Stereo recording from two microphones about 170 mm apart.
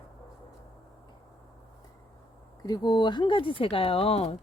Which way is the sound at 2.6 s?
25° left (ahead or behind).